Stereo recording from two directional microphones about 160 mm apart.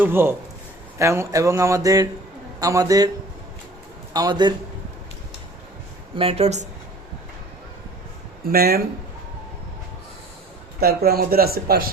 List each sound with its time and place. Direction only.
0.0 s speech: 15° right (ahead or behind)
4.1 s speech: 25° right (ahead or behind)
6.1 s speech: 35° right (ahead or behind)
8.4 s speech: 70° right (ahead or behind)
10.8 s speech: 70° right (ahead or behind)